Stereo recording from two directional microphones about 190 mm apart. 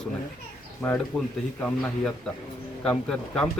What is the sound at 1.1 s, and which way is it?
Speech, 5° left (ahead or behind).